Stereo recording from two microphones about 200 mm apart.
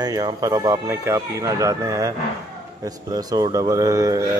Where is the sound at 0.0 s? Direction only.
20° right (ahead or behind).